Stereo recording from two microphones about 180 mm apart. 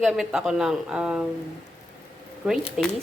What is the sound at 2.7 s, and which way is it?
Speech, 5° left (ahead or behind).